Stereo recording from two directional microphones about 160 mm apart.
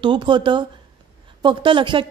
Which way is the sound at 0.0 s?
30° right (ahead or behind).